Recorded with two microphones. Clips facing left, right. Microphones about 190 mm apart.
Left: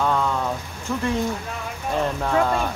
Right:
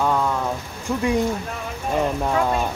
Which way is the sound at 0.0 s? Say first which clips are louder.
Right 1 dB; 10° right (ahead or behind).